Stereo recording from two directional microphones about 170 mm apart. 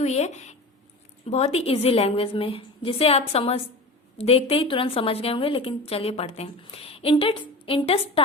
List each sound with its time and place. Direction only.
0.0 s a woman's voice: 40° left (ahead or behind)